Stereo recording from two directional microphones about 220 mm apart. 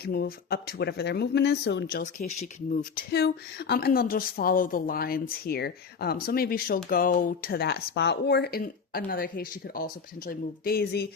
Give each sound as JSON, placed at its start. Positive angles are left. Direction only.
{"t": 0.0, "sound": "speech", "side_deg": 45}